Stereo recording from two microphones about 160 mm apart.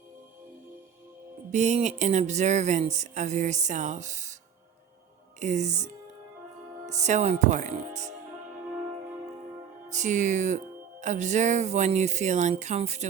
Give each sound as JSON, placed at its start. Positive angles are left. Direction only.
{"t": 1.5, "sound": "speech", "side_deg": -45}
{"t": 5.4, "sound": "speech", "side_deg": -45}
{"t": 9.9, "sound": "speech", "side_deg": -50}